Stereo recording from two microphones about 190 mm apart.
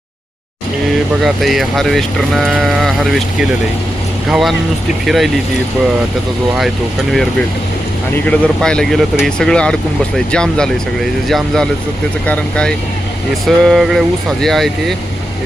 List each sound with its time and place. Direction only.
1.2 s speech: centre (ahead or behind)
7.1 s speech: centre (ahead or behind)